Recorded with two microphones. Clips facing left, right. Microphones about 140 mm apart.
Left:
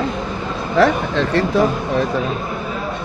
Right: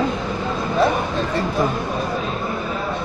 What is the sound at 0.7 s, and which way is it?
Speech, 80° left.